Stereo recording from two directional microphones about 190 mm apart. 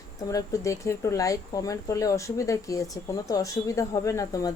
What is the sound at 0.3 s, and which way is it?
Speech, 15° left (ahead or behind).